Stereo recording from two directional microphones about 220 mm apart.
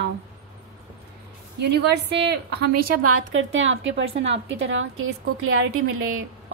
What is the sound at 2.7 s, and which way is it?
A woman's voice, 90° right.